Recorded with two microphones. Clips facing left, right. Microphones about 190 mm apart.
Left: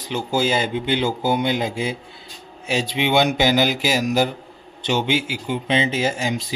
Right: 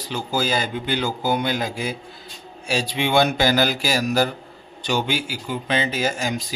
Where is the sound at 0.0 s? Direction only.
20° left (ahead or behind).